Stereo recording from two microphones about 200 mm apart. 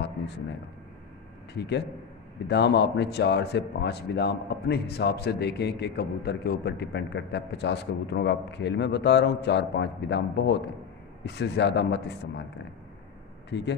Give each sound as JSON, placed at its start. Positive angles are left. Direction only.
{"t": 2.4, "sound": "a man's voice", "side_deg": 55}
{"t": 13.5, "sound": "a man's voice", "side_deg": 60}